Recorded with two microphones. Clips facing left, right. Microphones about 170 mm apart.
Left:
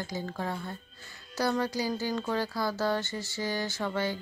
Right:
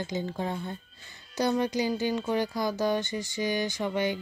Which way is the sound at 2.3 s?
20° right (ahead or behind).